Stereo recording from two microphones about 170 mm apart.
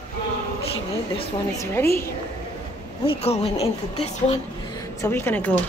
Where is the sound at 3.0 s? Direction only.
35° left (ahead or behind).